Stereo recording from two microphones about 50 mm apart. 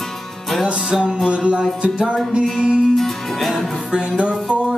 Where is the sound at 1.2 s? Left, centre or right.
Right.